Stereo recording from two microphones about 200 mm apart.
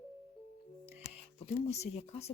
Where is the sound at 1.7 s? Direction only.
35° left (ahead or behind).